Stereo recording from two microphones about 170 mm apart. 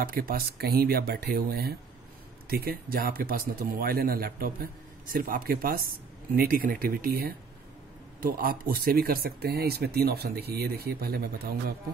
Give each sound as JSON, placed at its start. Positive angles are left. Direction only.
{"t": 0.0, "sound": "speech", "side_deg": -60}